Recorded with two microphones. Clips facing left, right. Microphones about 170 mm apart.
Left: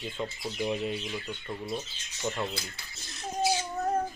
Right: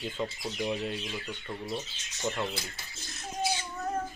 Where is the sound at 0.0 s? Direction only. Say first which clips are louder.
Right 1 dB; centre (ahead or behind).